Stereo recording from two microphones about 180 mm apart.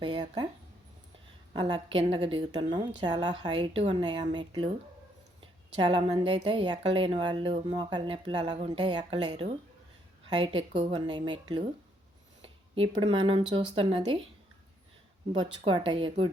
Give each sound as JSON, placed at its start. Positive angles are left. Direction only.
{"t": 0.0, "sound": "speech", "side_deg": -25}
{"t": 1.5, "sound": "a woman's voice", "side_deg": -25}
{"t": 12.7, "sound": "a woman's voice", "side_deg": -30}
{"t": 15.3, "sound": "a woman's voice", "side_deg": -25}